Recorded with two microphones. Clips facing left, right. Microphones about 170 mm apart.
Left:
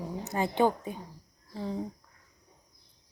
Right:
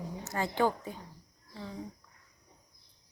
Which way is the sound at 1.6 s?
35° left (ahead or behind).